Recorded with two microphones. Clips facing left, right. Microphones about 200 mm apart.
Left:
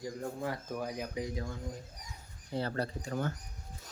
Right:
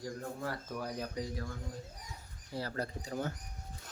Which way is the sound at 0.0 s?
15° left (ahead or behind).